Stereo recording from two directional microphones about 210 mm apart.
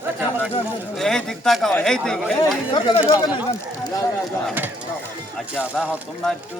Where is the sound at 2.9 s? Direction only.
15° left (ahead or behind).